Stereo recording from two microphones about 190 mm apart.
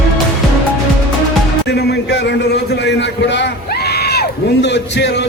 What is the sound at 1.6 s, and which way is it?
A man's voice, 60° left (ahead or behind).